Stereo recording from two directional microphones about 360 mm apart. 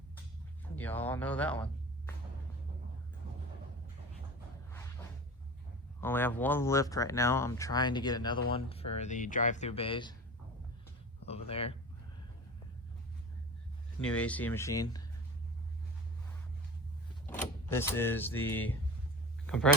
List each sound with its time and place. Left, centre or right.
0.8 s speech: centre
6.0 s speech: centre
11.3 s speech: centre
14.0 s speech: centre
17.2 s power windows: centre
18.5 s speech: centre